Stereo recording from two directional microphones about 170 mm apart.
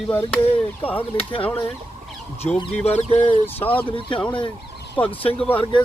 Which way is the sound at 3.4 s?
10° left (ahead or behind).